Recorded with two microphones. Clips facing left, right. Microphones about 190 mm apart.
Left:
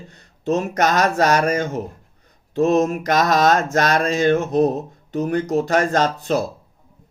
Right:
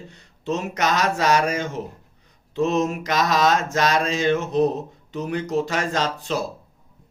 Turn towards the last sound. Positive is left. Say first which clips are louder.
# left 5 dB
turn(degrees=50)  # may be behind; listen again after turning